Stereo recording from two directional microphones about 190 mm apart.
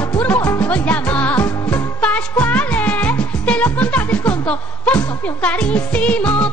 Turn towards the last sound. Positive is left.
turn(degrees=5)  # may be behind; listen again after turning